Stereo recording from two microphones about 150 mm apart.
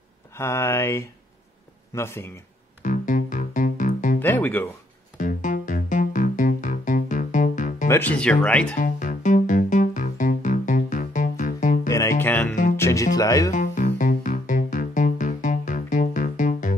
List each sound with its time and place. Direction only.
0.4 s speech: 20° left (ahead or behind)
2.8 s music: 60° left (ahead or behind)
4.2 s music: 10° left (ahead or behind)
5.1 s music: 60° left (ahead or behind)
7.9 s speech: 10° left (ahead or behind)
8.7 s music: 60° left (ahead or behind)
11.9 s music: 20° left (ahead or behind)
12.7 s speech: 20° left (ahead or behind)
13.5 s music: 55° left (ahead or behind)